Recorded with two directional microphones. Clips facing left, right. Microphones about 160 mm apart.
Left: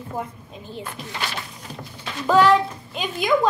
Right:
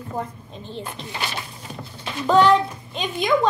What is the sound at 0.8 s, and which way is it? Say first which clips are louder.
Speech: even; 20° right (ahead or behind).